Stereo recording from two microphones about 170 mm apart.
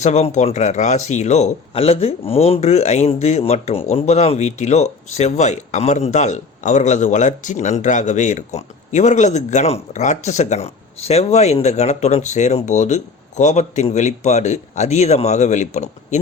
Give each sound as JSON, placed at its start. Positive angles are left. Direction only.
{"t": 0.0, "sound": "speech", "side_deg": 40}